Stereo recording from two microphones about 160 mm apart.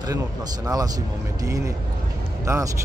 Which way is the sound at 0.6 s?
25° right (ahead or behind).